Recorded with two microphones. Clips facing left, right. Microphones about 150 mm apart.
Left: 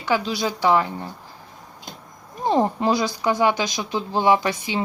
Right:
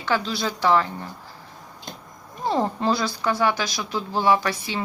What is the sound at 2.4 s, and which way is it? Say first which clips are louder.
Speech: left 3 dB; 15° left (ahead or behind).